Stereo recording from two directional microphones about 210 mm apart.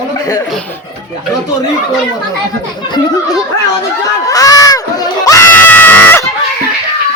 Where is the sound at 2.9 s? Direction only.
20° left (ahead or behind).